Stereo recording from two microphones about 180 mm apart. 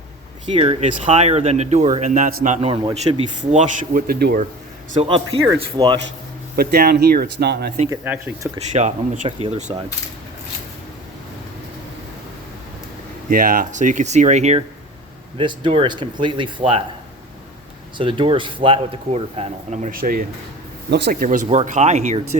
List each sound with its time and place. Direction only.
0.4 s speech: 30° right (ahead or behind)
0.8 s a man's voice: 40° right (ahead or behind); by 4.4 s 60° right (ahead or behind)
4.9 s a man's voice: 30° right (ahead or behind)
6.6 s speech: 60° right (ahead or behind)
7.9 s speech: 10° right (ahead or behind)
8.5 s a man's voice: 40° right (ahead or behind)
13.3 s speech: 50° right (ahead or behind)
15.4 s speech: 25° right (ahead or behind)
17.9 s a man's voice: 25° right (ahead or behind)